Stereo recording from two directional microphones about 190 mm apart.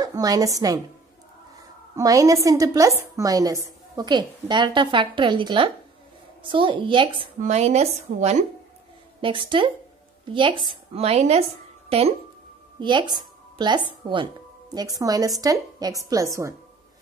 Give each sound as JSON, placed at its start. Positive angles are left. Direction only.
{"t": 0.0, "sound": "a woman's voice", "side_deg": -20}
{"t": 2.0, "sound": "a woman's voice", "side_deg": -20}
{"t": 7.3, "sound": "a woman's voice", "side_deg": -35}
{"t": 9.2, "sound": "a woman's voice", "side_deg": -25}
{"t": 12.7, "sound": "a woman's voice", "side_deg": -25}